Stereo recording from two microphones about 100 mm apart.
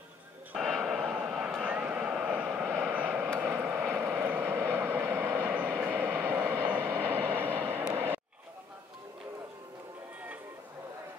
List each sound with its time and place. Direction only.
0.6 s vehicle: centre (ahead or behind); by 7.4 s 20° right (ahead or behind)